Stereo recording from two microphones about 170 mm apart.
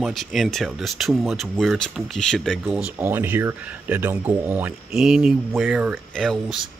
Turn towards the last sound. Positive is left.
turn(degrees=0)  # may be behind; listen again after turning